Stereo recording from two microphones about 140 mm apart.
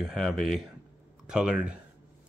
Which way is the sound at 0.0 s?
5° left (ahead or behind).